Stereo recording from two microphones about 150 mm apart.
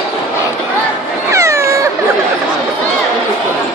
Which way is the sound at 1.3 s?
20° right (ahead or behind).